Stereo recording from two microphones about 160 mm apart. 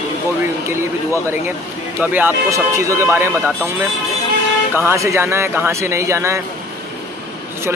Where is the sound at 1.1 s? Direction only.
15° right (ahead or behind).